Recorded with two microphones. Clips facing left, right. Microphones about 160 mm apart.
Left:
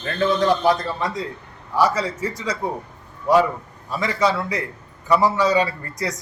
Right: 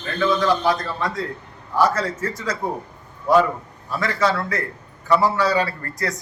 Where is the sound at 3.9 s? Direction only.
15° left (ahead or behind).